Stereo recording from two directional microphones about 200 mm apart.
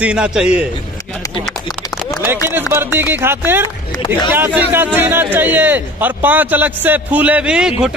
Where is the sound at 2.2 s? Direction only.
10° right (ahead or behind).